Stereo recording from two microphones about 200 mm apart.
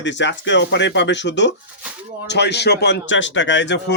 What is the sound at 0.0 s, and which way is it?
Speech, 65° left (ahead or behind).